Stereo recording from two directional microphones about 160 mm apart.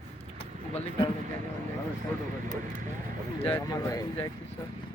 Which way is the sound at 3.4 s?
15° left (ahead or behind).